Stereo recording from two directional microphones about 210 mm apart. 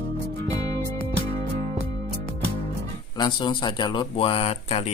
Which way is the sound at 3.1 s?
20° left (ahead or behind).